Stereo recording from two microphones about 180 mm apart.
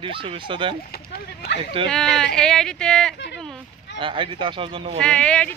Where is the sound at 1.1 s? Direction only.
65° left (ahead or behind).